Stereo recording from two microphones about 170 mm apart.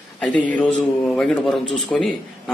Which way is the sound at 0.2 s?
5° left (ahead or behind).